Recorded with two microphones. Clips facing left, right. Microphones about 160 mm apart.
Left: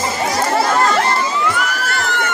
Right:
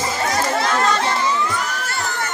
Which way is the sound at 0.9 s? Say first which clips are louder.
Left 3 dB; 75° left (ahead or behind).